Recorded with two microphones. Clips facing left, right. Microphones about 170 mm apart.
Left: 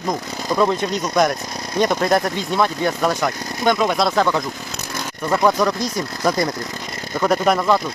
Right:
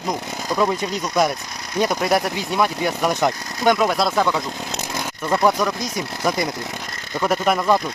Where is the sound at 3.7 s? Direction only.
5° right (ahead or behind).